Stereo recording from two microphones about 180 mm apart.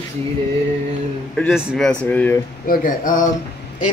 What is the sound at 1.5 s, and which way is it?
Speech, 5° right (ahead or behind).